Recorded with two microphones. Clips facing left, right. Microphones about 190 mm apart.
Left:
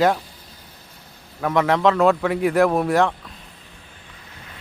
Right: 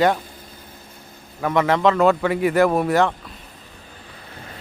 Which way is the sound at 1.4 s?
Centre (ahead or behind).